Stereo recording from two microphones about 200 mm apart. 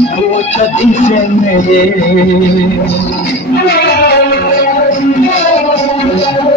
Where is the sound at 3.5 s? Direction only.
50° left (ahead or behind).